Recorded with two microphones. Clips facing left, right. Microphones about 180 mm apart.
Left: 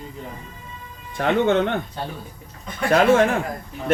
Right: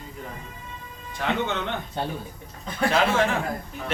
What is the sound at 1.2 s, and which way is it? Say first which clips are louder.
Speech: left 8 dB; 55° left (ahead or behind).